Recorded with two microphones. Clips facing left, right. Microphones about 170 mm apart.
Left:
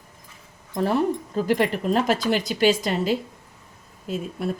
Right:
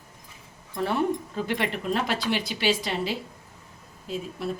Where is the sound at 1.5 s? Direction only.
40° left (ahead or behind).